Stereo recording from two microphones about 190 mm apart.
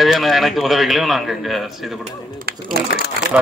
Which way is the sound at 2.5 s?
55° right (ahead or behind).